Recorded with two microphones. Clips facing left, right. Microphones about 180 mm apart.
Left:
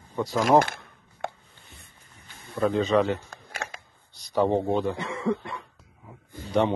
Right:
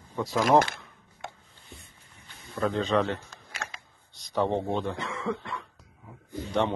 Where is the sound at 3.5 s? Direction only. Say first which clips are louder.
Left 4 dB; 50° left (ahead or behind).